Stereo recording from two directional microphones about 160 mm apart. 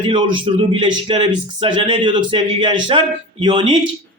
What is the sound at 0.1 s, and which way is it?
A man's voice, 30° right (ahead or behind).